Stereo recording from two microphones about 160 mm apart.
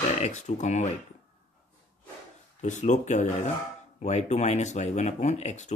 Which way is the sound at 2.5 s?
50° left (ahead or behind).